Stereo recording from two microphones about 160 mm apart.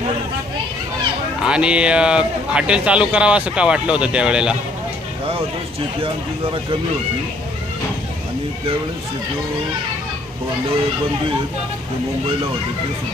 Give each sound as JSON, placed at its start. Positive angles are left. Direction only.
{"t": 1.4, "sound": "speech", "side_deg": -5}
{"t": 6.0, "sound": "speech", "side_deg": -35}